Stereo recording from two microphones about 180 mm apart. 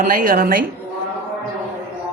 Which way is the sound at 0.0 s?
50° right (ahead or behind).